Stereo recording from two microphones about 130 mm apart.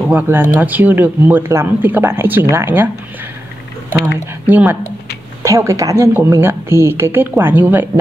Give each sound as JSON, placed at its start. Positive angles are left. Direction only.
{"t": 0.1, "sound": "speech", "side_deg": -15}
{"t": 3.9, "sound": "speech", "side_deg": -15}